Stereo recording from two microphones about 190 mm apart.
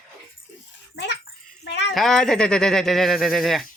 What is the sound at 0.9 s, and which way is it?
Speech, 65° left (ahead or behind).